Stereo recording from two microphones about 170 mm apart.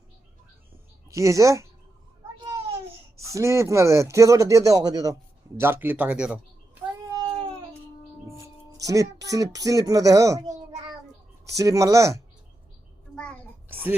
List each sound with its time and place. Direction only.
1.1 s speech: 20° right (ahead or behind)
3.2 s speech: 20° right (ahead or behind)
7.1 s baby cry: 20° right (ahead or behind)
8.3 s speech: 20° right (ahead or behind)
11.4 s speech: 20° right (ahead or behind)
13.1 s a sound: 5° left (ahead or behind)